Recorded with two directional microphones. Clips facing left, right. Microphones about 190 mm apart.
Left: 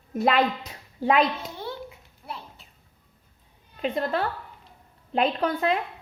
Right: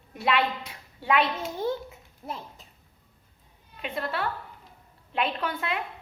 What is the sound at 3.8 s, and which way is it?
A woman's voice, 35° left (ahead or behind).